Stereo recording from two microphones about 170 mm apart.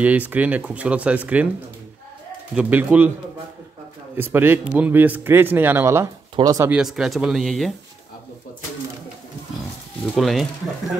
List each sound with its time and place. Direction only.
0.0 s speech: 10° right (ahead or behind)
2.5 s speech: 10° right (ahead or behind)
4.2 s speech: 10° right (ahead or behind)
6.7 s speech: centre (ahead or behind)
10.1 s speech: centre (ahead or behind)